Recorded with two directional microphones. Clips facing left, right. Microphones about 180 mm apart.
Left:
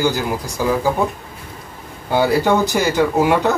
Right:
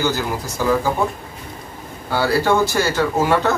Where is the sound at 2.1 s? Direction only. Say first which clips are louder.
Left 2 dB; 15° left (ahead or behind).